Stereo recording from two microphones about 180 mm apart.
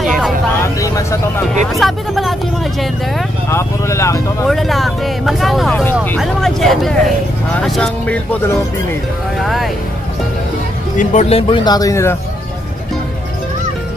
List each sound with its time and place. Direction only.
0.0 s vehicle: centre (ahead or behind)
0.7 s speech: 15° left (ahead or behind)
1.7 s speech: centre (ahead or behind)
3.4 s speech: 15° left (ahead or behind)
4.5 s speech: centre (ahead or behind)
9.4 s speech: centre (ahead or behind)
11.0 s speech: 40° left (ahead or behind); by 12.2 s 15° left (ahead or behind)